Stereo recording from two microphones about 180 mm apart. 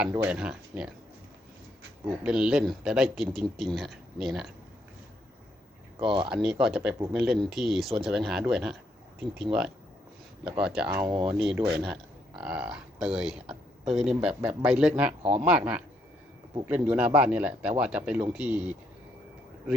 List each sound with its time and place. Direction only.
0.3 s speech: 5° right (ahead or behind)
2.2 s speech: 5° right (ahead or behind)
6.0 s speech: 30° right (ahead or behind)
6.2 s speech: 5° right (ahead or behind)